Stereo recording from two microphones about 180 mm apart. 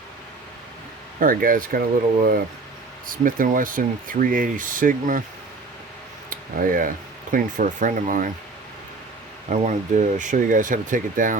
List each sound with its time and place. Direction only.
1.2 s speech: 50° right (ahead or behind)
3.1 s speech: 50° right (ahead or behind)
6.3 s speech: 50° right (ahead or behind)
9.5 s speech: 40° right (ahead or behind)